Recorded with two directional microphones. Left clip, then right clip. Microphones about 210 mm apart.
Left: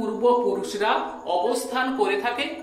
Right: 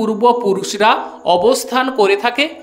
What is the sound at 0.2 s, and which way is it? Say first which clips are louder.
Speech: right 6 dB; 55° right (ahead or behind).